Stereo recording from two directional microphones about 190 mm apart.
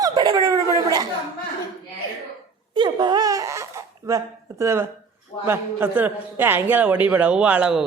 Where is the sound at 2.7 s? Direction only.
25° right (ahead or behind).